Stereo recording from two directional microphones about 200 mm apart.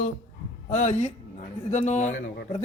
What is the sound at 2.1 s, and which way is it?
Speech, 55° left (ahead or behind).